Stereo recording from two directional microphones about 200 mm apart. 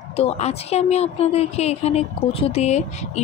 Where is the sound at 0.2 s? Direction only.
30° left (ahead or behind).